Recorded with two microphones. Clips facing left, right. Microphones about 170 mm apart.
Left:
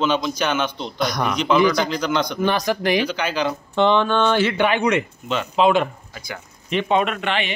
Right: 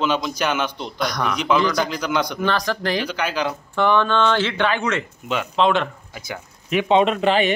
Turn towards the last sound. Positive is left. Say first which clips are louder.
# right 5 dB
turn(degrees=-35)  # may be behind; listen again after turning